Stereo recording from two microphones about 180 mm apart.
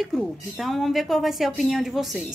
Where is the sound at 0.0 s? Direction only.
Centre (ahead or behind).